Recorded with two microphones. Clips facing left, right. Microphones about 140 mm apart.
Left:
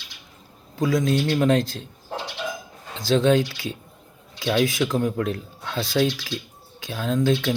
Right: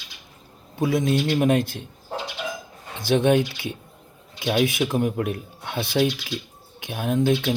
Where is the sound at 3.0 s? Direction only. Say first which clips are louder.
Even; 20° right (ahead or behind).